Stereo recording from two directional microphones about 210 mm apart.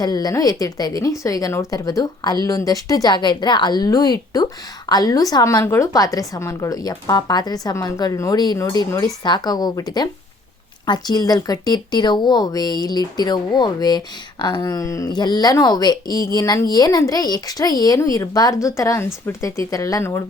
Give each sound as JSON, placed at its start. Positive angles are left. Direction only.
{"t": 0.0, "sound": "speech", "side_deg": 20}